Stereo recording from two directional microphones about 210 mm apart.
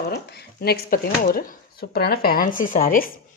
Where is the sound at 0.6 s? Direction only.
50° left (ahead or behind).